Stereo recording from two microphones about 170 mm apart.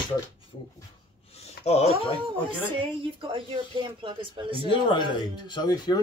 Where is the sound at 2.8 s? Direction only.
30° right (ahead or behind).